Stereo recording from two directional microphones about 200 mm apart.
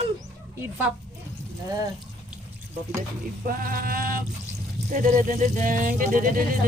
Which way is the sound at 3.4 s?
45° right (ahead or behind).